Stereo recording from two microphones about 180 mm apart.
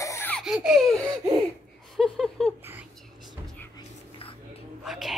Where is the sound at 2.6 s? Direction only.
10° right (ahead or behind).